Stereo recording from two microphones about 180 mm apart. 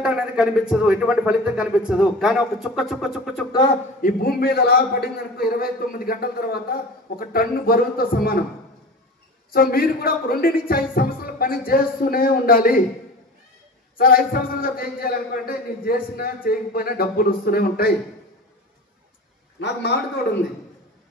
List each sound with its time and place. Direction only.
0.0 s a man's voice: 5° right (ahead or behind)
4.0 s a man's voice: 55° left (ahead or behind)
9.5 s a man's voice: 55° left (ahead or behind)
13.9 s a man's voice: 55° left (ahead or behind)
19.6 s a man's voice: 70° left (ahead or behind)